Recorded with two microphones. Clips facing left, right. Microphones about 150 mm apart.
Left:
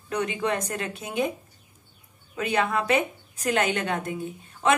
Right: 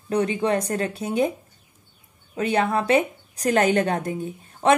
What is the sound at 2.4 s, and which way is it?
A woman's voice, 35° right (ahead or behind).